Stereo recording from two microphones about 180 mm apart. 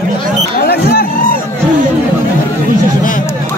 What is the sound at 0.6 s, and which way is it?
Speech, 60° left (ahead or behind).